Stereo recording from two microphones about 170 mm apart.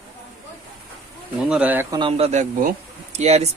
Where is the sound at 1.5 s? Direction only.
10° right (ahead or behind).